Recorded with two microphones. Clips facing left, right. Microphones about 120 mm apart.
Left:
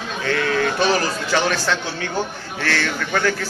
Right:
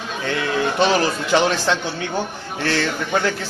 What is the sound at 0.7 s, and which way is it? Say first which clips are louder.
A man's voice: right 2 dB; 25° right (ahead or behind).